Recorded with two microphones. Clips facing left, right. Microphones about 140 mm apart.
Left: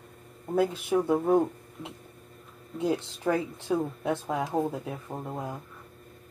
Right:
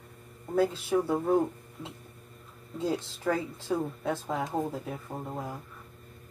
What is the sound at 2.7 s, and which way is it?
Speech, 15° left (ahead or behind).